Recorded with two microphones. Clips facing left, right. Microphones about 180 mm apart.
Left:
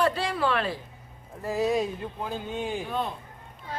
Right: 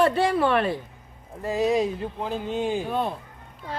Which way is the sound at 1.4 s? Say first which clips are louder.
Right 3 dB; 20° right (ahead or behind).